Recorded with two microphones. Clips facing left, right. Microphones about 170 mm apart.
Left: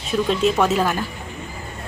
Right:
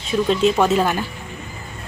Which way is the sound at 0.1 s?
Centre (ahead or behind).